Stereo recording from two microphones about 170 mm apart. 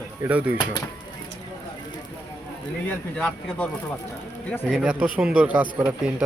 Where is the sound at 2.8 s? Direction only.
5° left (ahead or behind).